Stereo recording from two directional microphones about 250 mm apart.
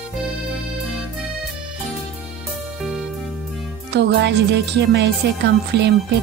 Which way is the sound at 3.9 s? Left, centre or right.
Right.